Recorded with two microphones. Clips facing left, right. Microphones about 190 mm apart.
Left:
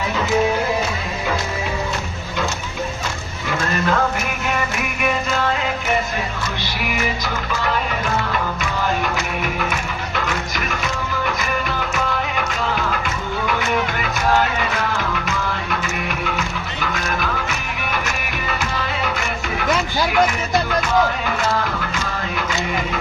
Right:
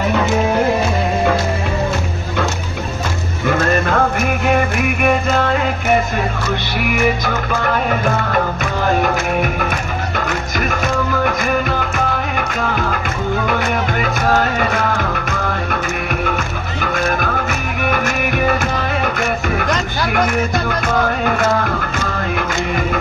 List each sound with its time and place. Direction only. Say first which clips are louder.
3.4 s music: right 5 dB; 55° right (ahead or behind)
7.2 s music: right 4 dB; 55° right (ahead or behind)